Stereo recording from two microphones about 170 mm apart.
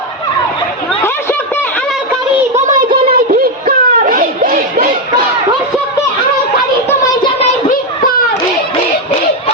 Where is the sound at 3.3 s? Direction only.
60° right (ahead or behind).